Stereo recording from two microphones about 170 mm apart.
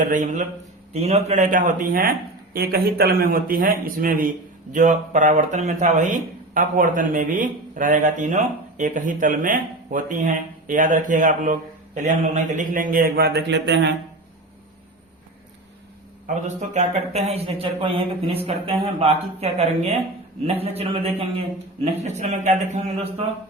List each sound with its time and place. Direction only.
0.0 s a man's voice: 50° right (ahead or behind); by 13.9 s 90° right
16.2 s speech: 45° right (ahead or behind)